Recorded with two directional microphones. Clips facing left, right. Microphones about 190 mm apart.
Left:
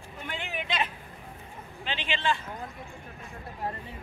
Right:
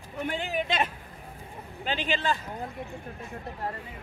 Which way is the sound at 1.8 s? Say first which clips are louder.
Right 2 dB; 40° right (ahead or behind).